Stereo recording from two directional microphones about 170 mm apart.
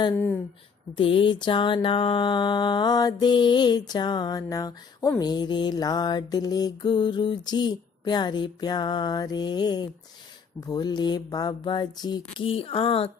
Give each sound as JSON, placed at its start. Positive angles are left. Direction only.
{"t": 0.9, "sound": "mantra", "side_deg": 30}